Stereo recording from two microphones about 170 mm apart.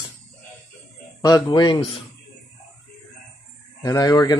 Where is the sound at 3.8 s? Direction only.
20° left (ahead or behind).